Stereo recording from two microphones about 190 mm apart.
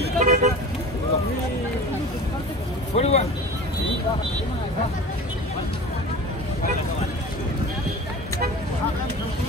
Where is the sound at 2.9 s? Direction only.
35° left (ahead or behind).